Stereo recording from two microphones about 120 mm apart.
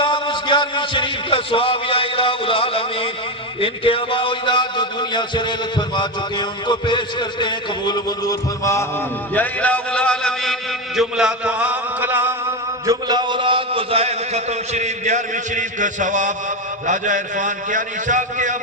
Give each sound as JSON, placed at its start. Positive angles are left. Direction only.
{"t": 0.0, "sound": "a sound", "side_deg": 40}
{"t": 3.6, "sound": "a man's voice", "side_deg": 50}
{"t": 9.3, "sound": "a man's voice", "side_deg": 15}
{"t": 12.8, "sound": "a man's voice", "side_deg": -30}